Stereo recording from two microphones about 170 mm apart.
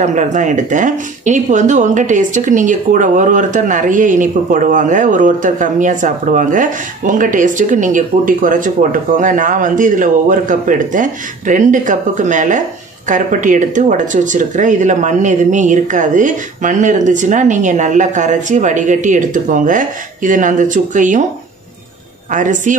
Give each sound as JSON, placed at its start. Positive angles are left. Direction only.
{"t": 0.0, "sound": "speech", "side_deg": -45}
{"t": 22.3, "sound": "speech", "side_deg": -50}